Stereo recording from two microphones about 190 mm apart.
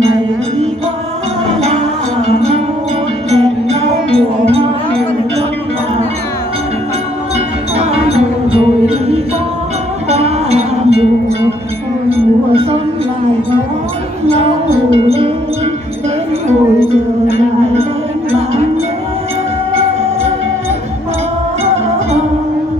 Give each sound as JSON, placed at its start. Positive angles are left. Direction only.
{"t": 2.2, "sound": "music", "side_deg": -30}
{"t": 7.3, "sound": "music", "side_deg": -35}
{"t": 15.0, "sound": "music", "side_deg": -30}